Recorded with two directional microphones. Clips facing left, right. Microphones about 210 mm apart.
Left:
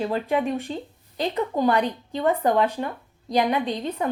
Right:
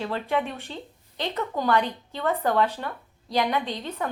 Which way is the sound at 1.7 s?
30° left (ahead or behind).